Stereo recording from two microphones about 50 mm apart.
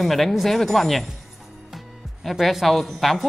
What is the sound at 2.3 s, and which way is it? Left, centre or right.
Speech, centre.